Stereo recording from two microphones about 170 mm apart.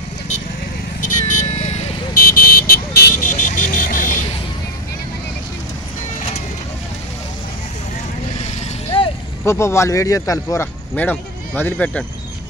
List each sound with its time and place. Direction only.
1.0 s a sound: 50° left (ahead or behind)
2.1 s vehicle: 55° left (ahead or behind)
9.4 s speech: 15° left (ahead or behind)